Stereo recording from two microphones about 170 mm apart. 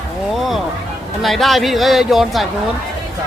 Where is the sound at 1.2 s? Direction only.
Centre (ahead or behind).